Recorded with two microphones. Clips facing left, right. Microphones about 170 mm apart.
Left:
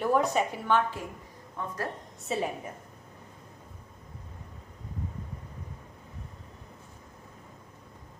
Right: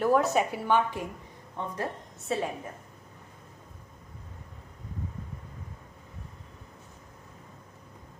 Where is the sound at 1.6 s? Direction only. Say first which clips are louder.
Right 1 dB; 20° right (ahead or behind).